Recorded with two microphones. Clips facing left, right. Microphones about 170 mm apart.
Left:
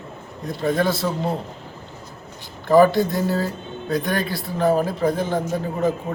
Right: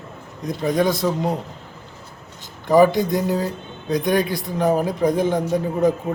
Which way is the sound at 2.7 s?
15° right (ahead or behind).